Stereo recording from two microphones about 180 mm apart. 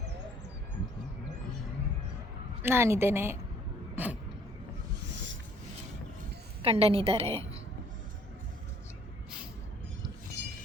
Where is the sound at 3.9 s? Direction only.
10° right (ahead or behind).